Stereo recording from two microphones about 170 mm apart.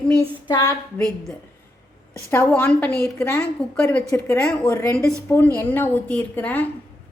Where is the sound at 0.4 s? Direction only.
20° left (ahead or behind).